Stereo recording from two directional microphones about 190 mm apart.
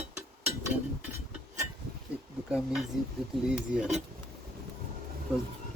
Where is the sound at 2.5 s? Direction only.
Centre (ahead or behind).